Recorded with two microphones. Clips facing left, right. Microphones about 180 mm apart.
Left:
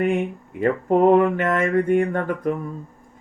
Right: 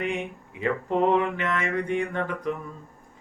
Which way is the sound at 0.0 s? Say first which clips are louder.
Left 8 dB; 50° left (ahead or behind).